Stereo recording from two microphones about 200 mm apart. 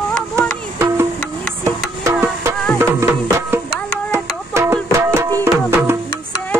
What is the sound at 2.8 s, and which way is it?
Music, 15° right (ahead or behind).